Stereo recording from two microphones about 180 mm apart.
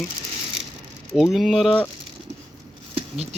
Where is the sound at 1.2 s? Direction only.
Centre (ahead or behind).